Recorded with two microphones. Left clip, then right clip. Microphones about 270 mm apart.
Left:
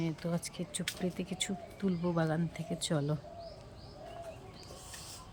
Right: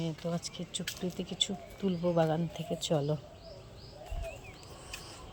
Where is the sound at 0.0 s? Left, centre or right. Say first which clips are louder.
Right 1 dB; centre.